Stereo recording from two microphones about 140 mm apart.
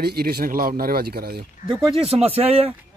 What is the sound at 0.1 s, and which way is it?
Speech, 90° right.